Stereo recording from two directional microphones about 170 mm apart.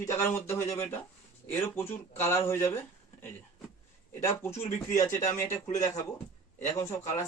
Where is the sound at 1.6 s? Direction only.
15° left (ahead or behind).